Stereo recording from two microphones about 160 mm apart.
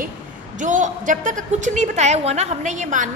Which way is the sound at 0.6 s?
50° right (ahead or behind).